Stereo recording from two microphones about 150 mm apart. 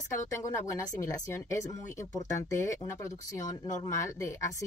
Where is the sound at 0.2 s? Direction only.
20° left (ahead or behind).